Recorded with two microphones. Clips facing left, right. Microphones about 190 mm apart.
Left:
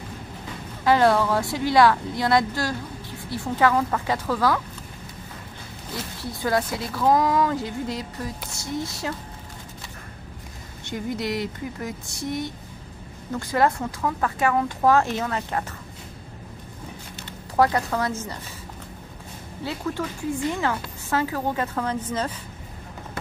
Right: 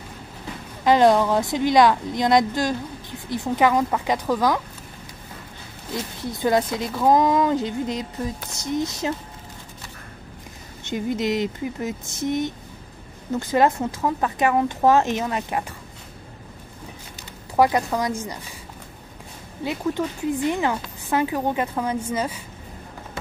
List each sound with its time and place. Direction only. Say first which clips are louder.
0.8 s a woman's voice: right 3 dB; 20° right (ahead or behind)
6.4 s speech: right 4 dB; 20° right (ahead or behind)
10.8 s speech: right 4 dB; 20° right (ahead or behind)
17.6 s a woman's voice: right 2 dB; 15° right (ahead or behind)
19.6 s a woman's voice: right 4 dB; 20° right (ahead or behind)